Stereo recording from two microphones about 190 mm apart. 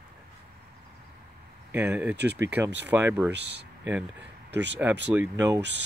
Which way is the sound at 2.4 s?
10° right (ahead or behind).